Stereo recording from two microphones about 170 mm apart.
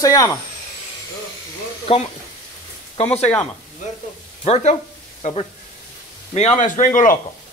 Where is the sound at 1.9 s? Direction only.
35° left (ahead or behind).